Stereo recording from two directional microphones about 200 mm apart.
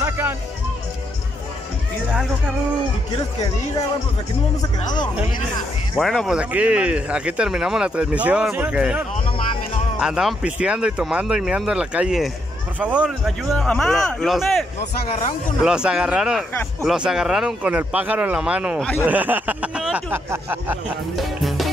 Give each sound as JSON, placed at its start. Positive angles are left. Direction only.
{"t": 0.0, "sound": "music", "side_deg": -10}
{"t": 5.9, "sound": "speech", "side_deg": 0}
{"t": 21.2, "sound": "music", "side_deg": 0}